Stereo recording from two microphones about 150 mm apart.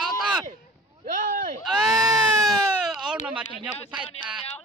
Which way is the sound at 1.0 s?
60° right (ahead or behind).